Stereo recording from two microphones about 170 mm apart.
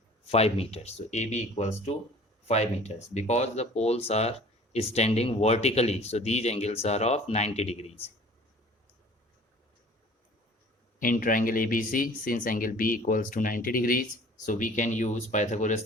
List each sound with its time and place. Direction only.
0.3 s speech: 35° left (ahead or behind)
11.0 s speech: 55° left (ahead or behind)